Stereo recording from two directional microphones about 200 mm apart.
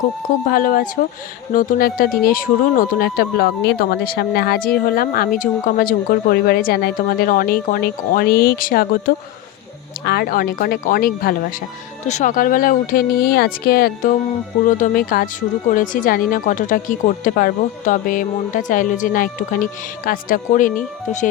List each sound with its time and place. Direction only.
0.4 s speech: 45° left (ahead or behind)